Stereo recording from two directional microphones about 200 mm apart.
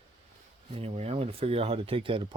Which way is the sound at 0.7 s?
30° right (ahead or behind).